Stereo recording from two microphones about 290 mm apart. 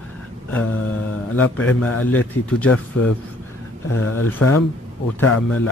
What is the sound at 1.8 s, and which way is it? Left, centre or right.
Speech, left.